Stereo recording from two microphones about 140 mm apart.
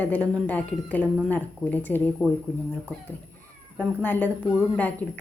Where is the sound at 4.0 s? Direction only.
15° left (ahead or behind).